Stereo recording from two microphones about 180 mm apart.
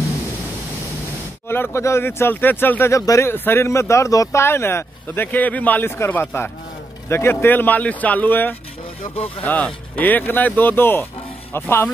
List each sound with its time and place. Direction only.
1.5 s speech: 15° left (ahead or behind)
9.0 s speech: 35° left (ahead or behind)
9.4 s speech: 10° left (ahead or behind)